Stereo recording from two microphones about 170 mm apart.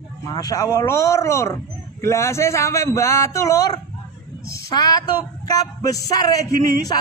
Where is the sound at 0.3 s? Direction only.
20° left (ahead or behind).